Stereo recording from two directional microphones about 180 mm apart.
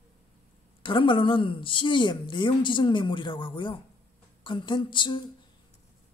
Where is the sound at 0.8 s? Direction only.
30° left (ahead or behind).